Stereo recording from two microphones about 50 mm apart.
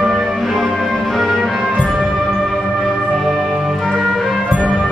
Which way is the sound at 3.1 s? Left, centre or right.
Centre.